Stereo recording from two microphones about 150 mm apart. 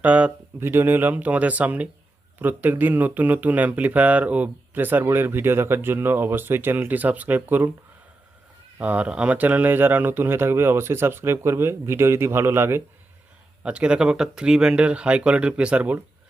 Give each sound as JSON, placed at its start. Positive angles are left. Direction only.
{"t": 0.0, "sound": "speech", "side_deg": -10}
{"t": 8.8, "sound": "speech", "side_deg": -10}